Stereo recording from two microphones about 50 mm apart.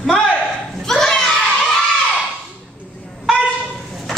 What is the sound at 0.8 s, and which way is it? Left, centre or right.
Children playing, centre.